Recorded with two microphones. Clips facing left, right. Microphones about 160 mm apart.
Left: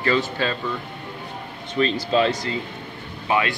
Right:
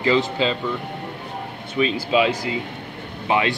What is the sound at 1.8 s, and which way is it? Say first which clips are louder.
Speech: right 1 dB; 10° right (ahead or behind).